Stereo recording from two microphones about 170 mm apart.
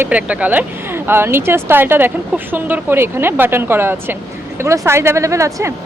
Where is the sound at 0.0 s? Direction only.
10° right (ahead or behind).